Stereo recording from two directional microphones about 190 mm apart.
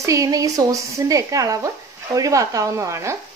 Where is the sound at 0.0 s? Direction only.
15° right (ahead or behind).